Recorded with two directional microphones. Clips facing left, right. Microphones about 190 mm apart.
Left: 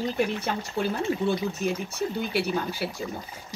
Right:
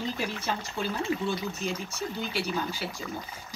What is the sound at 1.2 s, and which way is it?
Speech, 60° left (ahead or behind).